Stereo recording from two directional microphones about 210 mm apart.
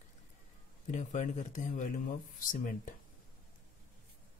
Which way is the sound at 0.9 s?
35° left (ahead or behind).